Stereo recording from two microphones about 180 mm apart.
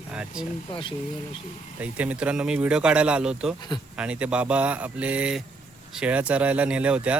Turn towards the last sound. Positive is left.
turn(degrees=-5)  # may be behind; listen again after turning